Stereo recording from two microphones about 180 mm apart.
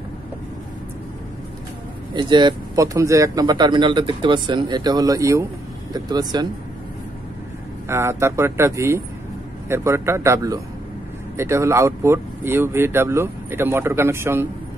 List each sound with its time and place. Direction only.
2.1 s speech: 25° right (ahead or behind)
7.9 s speech: 15° right (ahead or behind)